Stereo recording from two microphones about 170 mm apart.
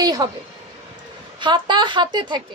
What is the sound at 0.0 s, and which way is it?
Speech, 25° right (ahead or behind).